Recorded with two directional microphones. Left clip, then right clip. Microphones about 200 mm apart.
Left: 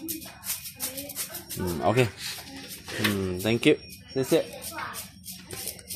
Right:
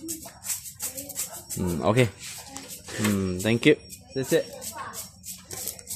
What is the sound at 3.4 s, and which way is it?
Speech, 35° right (ahead or behind).